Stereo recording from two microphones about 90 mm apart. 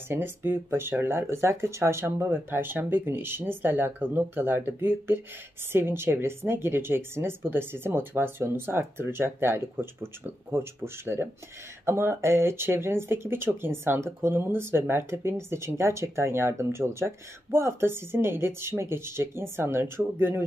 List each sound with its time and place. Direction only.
0.1 s speech: 25° right (ahead or behind)